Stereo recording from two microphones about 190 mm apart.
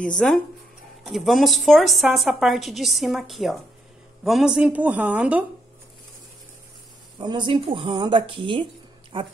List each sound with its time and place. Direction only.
0.0 s a woman's voice: 5° left (ahead or behind)
7.2 s speech: 25° right (ahead or behind)